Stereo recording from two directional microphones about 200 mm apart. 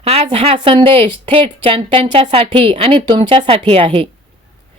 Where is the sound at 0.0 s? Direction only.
30° right (ahead or behind).